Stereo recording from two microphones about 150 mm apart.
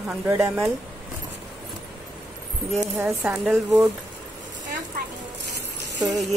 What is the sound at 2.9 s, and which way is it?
Speech, 10° right (ahead or behind).